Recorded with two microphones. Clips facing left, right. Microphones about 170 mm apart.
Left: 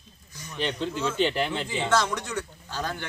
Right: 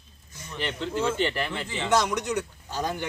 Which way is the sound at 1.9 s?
15° right (ahead or behind).